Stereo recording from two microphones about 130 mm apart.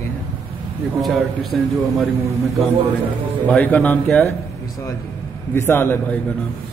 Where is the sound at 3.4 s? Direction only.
10° left (ahead or behind).